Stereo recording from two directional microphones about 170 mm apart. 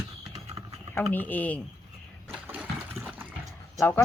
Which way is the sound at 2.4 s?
10° right (ahead or behind).